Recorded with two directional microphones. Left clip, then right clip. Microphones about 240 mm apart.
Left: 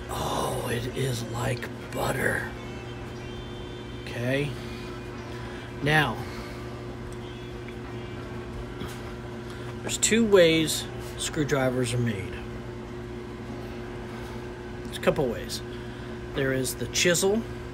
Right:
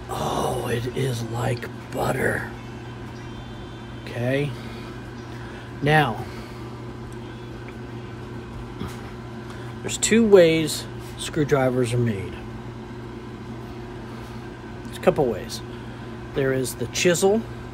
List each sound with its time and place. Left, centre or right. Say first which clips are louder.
0.1 s speech: right 4 dB; right
4.1 s speech: right 4 dB; centre
5.9 s speech: right 4 dB; centre
9.8 s speech: right 5 dB; right
15.0 s speech: right 5 dB; centre